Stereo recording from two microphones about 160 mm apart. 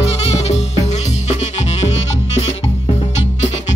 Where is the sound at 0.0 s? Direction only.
40° left (ahead or behind).